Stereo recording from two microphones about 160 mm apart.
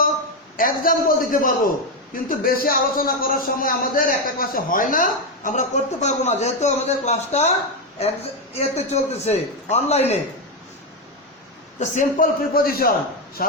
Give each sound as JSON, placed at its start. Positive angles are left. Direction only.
{"t": 0.5, "sound": "a man's voice", "side_deg": 60}
{"t": 8.5, "sound": "a man's voice", "side_deg": 40}
{"t": 11.8, "sound": "a man's voice", "side_deg": 55}